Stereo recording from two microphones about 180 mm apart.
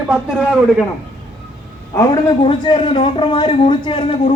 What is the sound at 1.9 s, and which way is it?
A man's voice, 20° left (ahead or behind).